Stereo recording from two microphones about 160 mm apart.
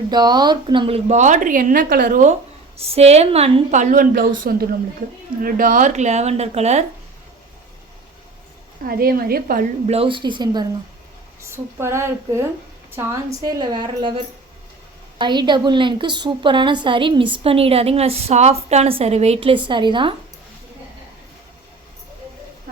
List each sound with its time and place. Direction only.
0.1 s speech: 25° right (ahead or behind); by 2.3 s 55° right (ahead or behind)
2.7 s speech: 40° right (ahead or behind)
8.9 s a woman's voice: 65° right (ahead or behind)
9.8 s a woman's voice: 40° right (ahead or behind)
15.2 s a woman's voice: 30° right (ahead or behind)